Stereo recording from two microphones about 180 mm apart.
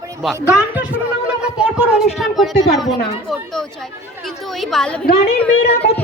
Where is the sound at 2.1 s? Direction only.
Centre (ahead or behind).